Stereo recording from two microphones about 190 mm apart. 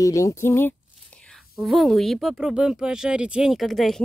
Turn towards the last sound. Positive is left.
turn(degrees=0)  # may be behind; listen again after turning